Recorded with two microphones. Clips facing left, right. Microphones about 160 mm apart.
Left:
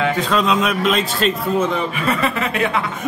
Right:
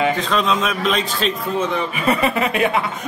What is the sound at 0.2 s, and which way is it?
A man's voice, 5° left (ahead or behind).